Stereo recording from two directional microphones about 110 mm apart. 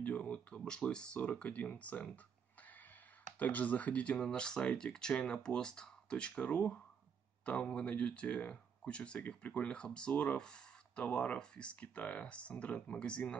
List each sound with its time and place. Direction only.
0.0 s speech: 10° left (ahead or behind)
2.6 s a sound: 15° left (ahead or behind)
3.3 s speech: 15° left (ahead or behind)